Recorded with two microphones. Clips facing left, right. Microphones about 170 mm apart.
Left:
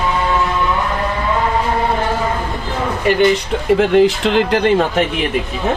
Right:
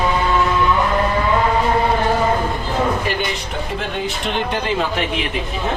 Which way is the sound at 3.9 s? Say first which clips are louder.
Left 9 dB; 90° left.